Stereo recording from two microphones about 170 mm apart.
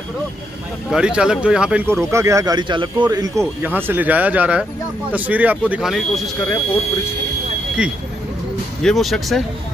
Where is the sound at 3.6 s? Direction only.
10° right (ahead or behind).